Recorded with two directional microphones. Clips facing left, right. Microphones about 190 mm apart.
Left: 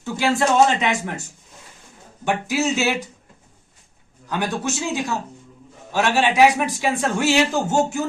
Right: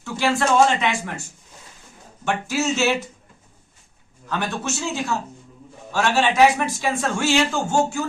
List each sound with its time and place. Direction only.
0.0 s speech: 20° left (ahead or behind)
2.2 s speech: 15° left (ahead or behind)
4.3 s speech: 15° left (ahead or behind)